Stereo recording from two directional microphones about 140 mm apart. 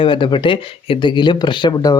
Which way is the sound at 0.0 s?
35° left (ahead or behind).